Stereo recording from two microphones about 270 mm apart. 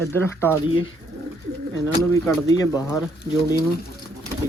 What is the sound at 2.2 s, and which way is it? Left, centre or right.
Speech, centre.